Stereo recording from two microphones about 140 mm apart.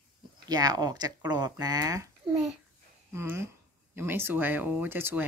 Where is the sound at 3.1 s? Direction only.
20° right (ahead or behind).